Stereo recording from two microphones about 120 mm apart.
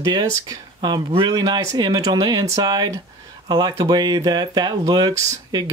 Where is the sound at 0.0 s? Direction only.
35° right (ahead or behind).